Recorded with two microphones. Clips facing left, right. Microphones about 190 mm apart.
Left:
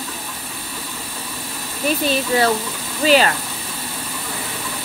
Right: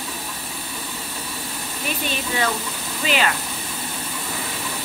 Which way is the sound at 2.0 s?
35° left (ahead or behind).